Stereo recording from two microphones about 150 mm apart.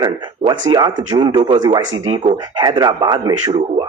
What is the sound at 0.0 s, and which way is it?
Speech, 30° right (ahead or behind).